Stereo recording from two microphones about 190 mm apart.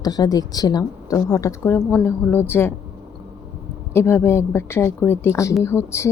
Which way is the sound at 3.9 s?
15° left (ahead or behind).